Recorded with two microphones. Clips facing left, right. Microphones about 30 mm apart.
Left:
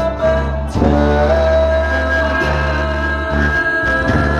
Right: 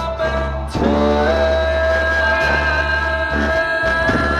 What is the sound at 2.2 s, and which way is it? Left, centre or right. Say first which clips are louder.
Music: right 1 dB; centre.